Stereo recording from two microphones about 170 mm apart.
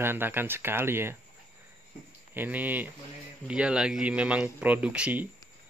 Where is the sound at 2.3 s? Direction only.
10° right (ahead or behind).